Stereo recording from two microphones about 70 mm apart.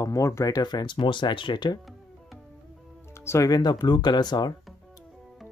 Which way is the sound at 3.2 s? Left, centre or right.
Left.